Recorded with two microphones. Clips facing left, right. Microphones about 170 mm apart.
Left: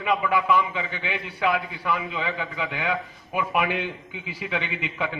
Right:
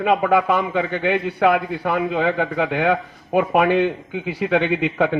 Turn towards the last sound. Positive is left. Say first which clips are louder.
# right 11 dB
turn(degrees=-60)  # may be behind; listen again after turning